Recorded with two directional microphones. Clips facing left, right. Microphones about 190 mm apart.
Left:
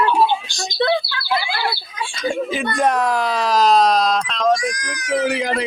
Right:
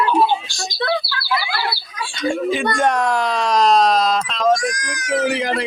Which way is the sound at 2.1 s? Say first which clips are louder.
Right 2 dB; centre (ahead or behind).